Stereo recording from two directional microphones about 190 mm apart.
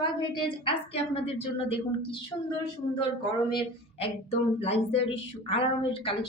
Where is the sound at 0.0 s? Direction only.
25° left (ahead or behind).